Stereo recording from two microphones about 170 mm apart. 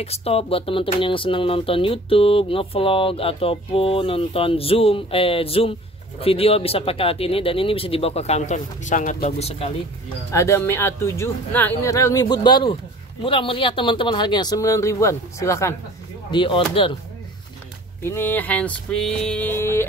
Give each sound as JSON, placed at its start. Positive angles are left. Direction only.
{"t": 0.0, "sound": "speech", "side_deg": 35}
{"t": 9.4, "sound": "speech", "side_deg": 35}
{"t": 10.3, "sound": "speech", "side_deg": 15}
{"t": 16.3, "sound": "speech", "side_deg": 30}
{"t": 18.0, "sound": "speech", "side_deg": 15}